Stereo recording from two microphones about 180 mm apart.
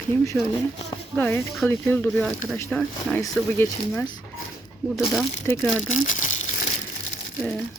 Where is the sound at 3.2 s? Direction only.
15° left (ahead or behind).